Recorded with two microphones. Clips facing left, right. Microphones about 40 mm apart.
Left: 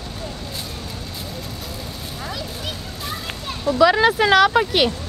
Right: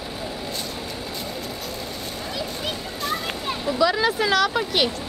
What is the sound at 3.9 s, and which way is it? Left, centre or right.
Speech, left.